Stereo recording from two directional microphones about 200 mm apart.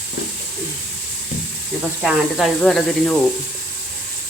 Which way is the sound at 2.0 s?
Centre (ahead or behind).